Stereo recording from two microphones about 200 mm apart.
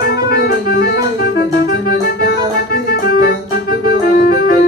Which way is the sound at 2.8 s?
50° left (ahead or behind).